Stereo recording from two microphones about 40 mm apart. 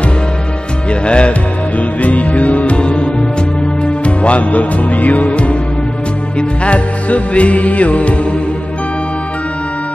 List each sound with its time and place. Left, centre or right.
1.0 s music: left
1.8 s music: left
6.6 s music: left